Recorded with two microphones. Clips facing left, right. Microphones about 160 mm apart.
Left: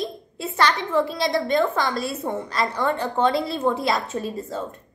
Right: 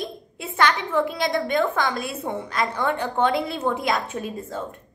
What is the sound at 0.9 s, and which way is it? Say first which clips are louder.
Speech: left 1 dB; 5° left (ahead or behind).